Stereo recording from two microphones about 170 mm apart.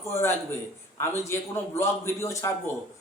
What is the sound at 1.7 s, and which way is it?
Speech, 15° left (ahead or behind).